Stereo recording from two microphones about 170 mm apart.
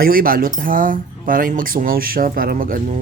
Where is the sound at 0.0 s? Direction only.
60° right (ahead or behind).